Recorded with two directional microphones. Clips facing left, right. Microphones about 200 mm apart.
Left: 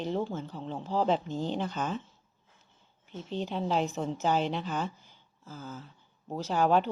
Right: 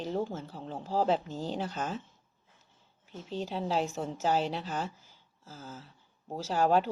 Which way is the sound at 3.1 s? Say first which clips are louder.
Left 2 dB; centre (ahead or behind).